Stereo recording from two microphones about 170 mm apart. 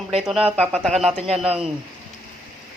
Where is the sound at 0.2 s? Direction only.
Centre (ahead or behind).